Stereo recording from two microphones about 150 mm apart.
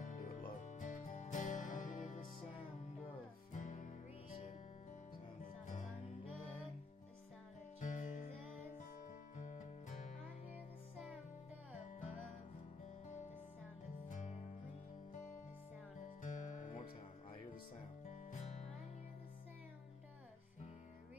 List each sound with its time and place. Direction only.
0.0 s music: 60° left (ahead or behind)
3.5 s music: 55° left (ahead or behind)
7.8 s music: 60° left (ahead or behind)
9.4 s music: 55° left (ahead or behind)
14.0 s music: 55° left (ahead or behind)
16.2 s music: 60° left (ahead or behind)
18.0 s music: 50° left (ahead or behind)